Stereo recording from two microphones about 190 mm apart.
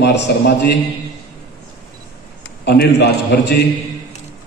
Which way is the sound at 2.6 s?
60° left (ahead or behind).